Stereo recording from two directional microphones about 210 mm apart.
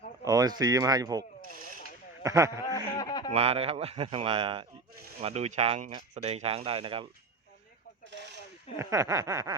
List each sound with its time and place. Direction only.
0.3 s speech: 20° right (ahead or behind)
2.2 s speech: 15° right (ahead or behind)
2.7 s a sound: 15° left (ahead or behind)
3.3 s speech: 30° right (ahead or behind)
8.8 s speech: 15° right (ahead or behind)